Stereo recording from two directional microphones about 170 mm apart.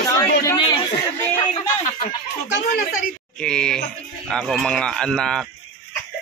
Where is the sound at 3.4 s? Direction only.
5° left (ahead or behind).